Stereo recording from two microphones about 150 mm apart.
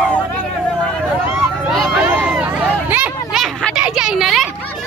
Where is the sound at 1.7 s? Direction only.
Centre (ahead or behind).